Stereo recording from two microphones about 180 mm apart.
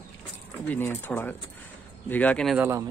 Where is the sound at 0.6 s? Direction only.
10° left (ahead or behind).